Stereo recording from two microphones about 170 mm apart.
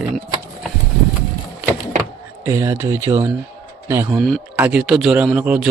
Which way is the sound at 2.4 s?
15° right (ahead or behind).